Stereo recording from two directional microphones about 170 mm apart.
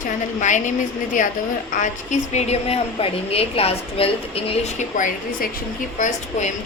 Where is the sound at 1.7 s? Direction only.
45° left (ahead or behind).